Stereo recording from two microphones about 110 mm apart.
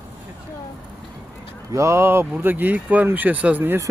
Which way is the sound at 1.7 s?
25° right (ahead or behind).